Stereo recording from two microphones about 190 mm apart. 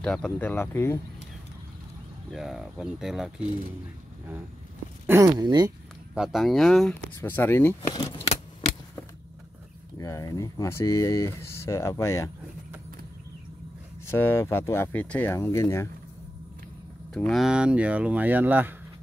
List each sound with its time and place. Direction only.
0.0 s speech: 5° left (ahead or behind)
2.3 s speech: centre (ahead or behind)
5.0 s speech: 15° right (ahead or behind)
6.1 s speech: centre (ahead or behind)
7.9 s scissors: 25° left (ahead or behind)
9.9 s speech: 20° left (ahead or behind)
14.0 s speech: 15° left (ahead or behind)
17.1 s speech: centre (ahead or behind)